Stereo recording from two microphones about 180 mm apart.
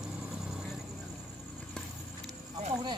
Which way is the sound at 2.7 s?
25° right (ahead or behind).